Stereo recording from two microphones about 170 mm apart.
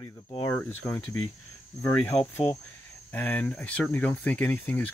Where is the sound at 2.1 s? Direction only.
35° left (ahead or behind).